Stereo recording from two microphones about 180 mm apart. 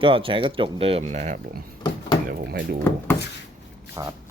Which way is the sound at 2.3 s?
60° right (ahead or behind).